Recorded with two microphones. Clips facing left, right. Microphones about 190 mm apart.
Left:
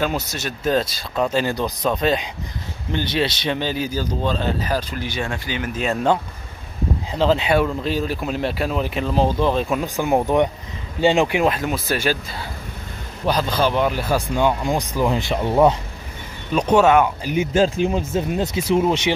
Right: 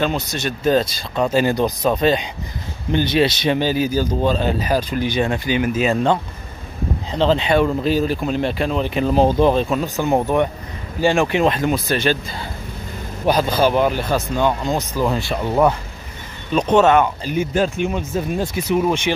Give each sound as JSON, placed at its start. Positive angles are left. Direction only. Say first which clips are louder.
{"t": 0.0, "sound": "speech", "louder": "right 2 dB", "side_deg": 5}
{"t": 1.3, "sound": "speech", "louder": "right 4 dB", "side_deg": -15}
{"t": 1.9, "sound": "speech", "louder": "right 2 dB", "side_deg": 0}
{"t": 2.9, "sound": "speech", "louder": "right 5 dB", "side_deg": -15}
{"t": 7.1, "sound": "speech", "louder": "right 1 dB", "side_deg": 5}
{"t": 9.0, "sound": "speech", "louder": "right 5 dB", "side_deg": -15}
{"t": 9.6, "sound": "speech", "louder": "right 2 dB", "side_deg": 10}
{"t": 13.2, "sound": "speech", "louder": "right 3 dB", "side_deg": -15}
{"t": 13.7, "sound": "speech", "louder": "right 3 dB", "side_deg": -5}
{"t": 14.1, "sound": "speech", "louder": "even", "side_deg": 10}
{"t": 16.5, "sound": "speech", "louder": "right 1 dB", "side_deg": 10}
{"t": 17.6, "sound": "speech", "louder": "left 3 dB", "side_deg": 30}